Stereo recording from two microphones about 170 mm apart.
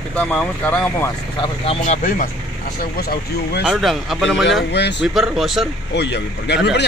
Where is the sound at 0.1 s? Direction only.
5° left (ahead or behind).